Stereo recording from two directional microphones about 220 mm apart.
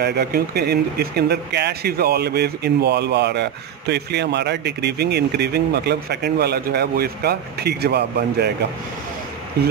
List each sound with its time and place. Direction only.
0.0 s speech: 45° right (ahead or behind)